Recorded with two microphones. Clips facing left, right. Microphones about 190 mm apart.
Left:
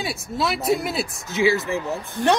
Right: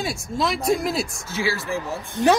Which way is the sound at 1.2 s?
20° left (ahead or behind).